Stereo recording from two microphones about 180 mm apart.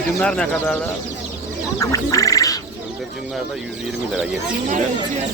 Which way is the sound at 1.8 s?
20° left (ahead or behind).